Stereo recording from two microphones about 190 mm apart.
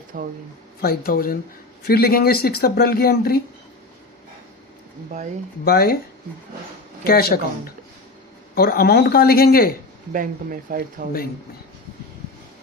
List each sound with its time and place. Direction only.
0.1 s speech: 45° right (ahead or behind)
0.8 s speech: 50° left (ahead or behind)
5.6 s speech: 55° left (ahead or behind)
7.0 s speech: 55° left (ahead or behind)
8.5 s speech: 55° left (ahead or behind)
10.1 s speech: 45° right (ahead or behind)